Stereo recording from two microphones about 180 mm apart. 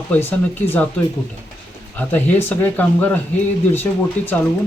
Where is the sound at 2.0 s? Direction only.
10° left (ahead or behind).